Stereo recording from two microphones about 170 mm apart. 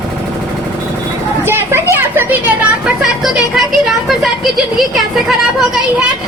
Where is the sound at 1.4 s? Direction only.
15° right (ahead or behind).